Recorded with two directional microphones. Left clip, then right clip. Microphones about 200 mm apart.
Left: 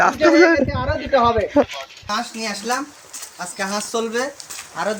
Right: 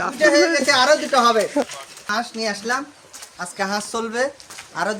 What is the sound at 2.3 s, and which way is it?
Speech, 10° right (ahead or behind).